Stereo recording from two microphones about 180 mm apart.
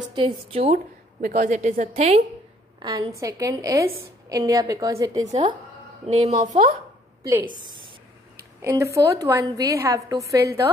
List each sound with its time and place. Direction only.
0.1 s a woman's voice: 30° right (ahead or behind)
1.2 s a woman's voice: 45° right (ahead or behind)
2.8 s a woman's voice: 25° right (ahead or behind); by 6.8 s 40° right (ahead or behind)
7.2 s a woman's voice: 20° right (ahead or behind)